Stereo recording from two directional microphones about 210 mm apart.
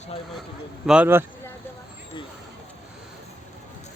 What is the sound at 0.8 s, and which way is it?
Speech, 5° right (ahead or behind).